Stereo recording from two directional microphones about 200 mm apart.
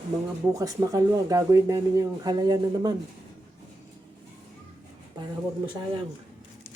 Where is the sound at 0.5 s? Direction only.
20° right (ahead or behind).